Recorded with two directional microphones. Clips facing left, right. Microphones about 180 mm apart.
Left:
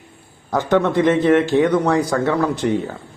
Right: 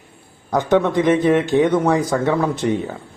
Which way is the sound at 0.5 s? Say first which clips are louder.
Even; 15° right (ahead or behind).